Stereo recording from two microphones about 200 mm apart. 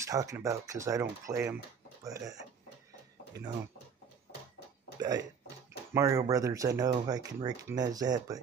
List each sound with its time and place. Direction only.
0.0 s speech: 15° right (ahead or behind)
4.9 s speech: 20° right (ahead or behind)